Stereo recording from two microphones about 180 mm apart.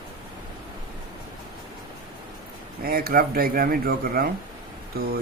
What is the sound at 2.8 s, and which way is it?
Speech, 55° right (ahead or behind).